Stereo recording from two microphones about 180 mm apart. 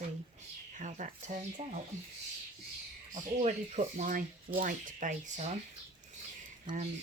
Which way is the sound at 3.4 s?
40° right (ahead or behind).